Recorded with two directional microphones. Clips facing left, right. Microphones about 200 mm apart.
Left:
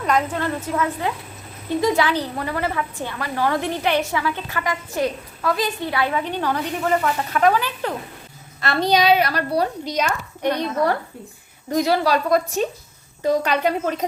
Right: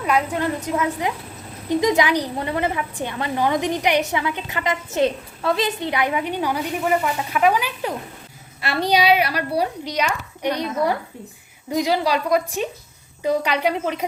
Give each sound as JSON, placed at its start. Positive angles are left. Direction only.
{"t": 0.0, "sound": "a woman's voice", "side_deg": -10}